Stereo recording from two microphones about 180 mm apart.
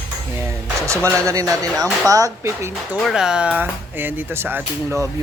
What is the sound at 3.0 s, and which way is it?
Speech, 5° right (ahead or behind).